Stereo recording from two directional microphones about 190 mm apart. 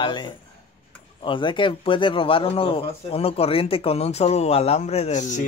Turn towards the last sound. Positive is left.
turn(degrees=40)  # may be behind; listen again after turning